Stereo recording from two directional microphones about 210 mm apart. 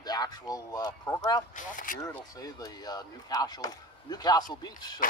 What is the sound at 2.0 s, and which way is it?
Speech, 15° left (ahead or behind).